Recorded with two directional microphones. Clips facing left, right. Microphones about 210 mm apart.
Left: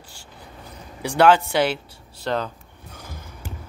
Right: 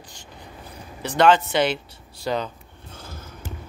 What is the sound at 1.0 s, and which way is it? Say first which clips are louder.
Speech: left 1 dB; 10° left (ahead or behind).